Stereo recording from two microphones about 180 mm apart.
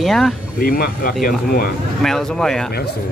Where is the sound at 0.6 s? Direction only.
55° left (ahead or behind).